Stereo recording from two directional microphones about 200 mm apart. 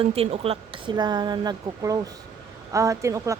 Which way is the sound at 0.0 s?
30° right (ahead or behind).